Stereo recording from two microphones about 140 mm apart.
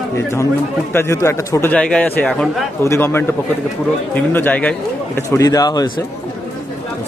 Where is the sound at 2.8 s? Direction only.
20° left (ahead or behind).